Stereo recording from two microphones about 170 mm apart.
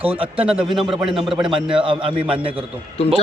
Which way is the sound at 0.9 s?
30° right (ahead or behind).